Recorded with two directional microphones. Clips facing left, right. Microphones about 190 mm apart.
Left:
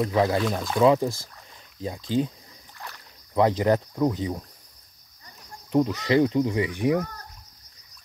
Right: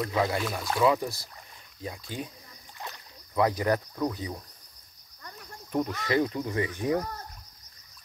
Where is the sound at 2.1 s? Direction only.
30° left (ahead or behind).